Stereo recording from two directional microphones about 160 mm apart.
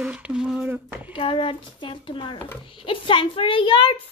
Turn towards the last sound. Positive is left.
turn(degrees=30)  # may be behind; listen again after turning